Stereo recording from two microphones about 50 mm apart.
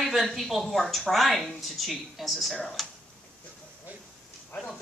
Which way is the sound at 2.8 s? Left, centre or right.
Centre.